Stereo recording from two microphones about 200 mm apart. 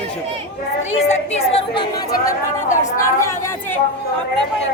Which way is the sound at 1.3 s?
30° left (ahead or behind).